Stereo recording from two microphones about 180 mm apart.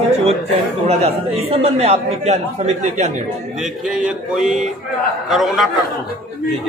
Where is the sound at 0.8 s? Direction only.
35° right (ahead or behind).